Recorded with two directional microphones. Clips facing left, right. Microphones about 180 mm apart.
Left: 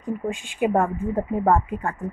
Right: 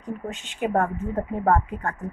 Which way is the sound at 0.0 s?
10° left (ahead or behind).